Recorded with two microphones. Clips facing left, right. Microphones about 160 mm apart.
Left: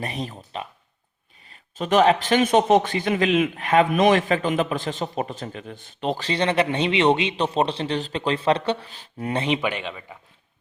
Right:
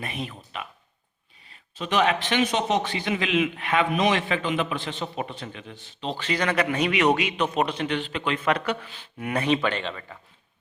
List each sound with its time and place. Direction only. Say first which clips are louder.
0.0 s a man's voice: left 3 dB; 35° left (ahead or behind)
6.1 s speech: left 2 dB; 30° left (ahead or behind); by 10.2 s 10° left (ahead or behind)